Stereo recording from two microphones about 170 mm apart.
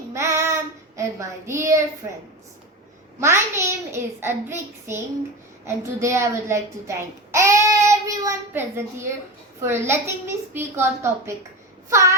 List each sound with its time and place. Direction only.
0.1 s child singing: 15° right (ahead or behind)
0.9 s a child's voice: 15° right (ahead or behind)
3.2 s a child's voice: 15° right (ahead or behind)